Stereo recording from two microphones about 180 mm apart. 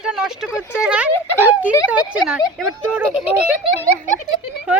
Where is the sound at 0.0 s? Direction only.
5° right (ahead or behind).